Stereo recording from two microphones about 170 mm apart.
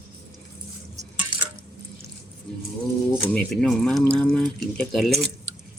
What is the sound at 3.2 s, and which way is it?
Drip, 10° left (ahead or behind).